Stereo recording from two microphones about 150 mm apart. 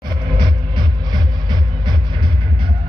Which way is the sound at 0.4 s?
30° right (ahead or behind).